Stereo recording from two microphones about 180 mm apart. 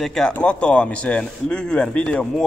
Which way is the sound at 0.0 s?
5° left (ahead or behind).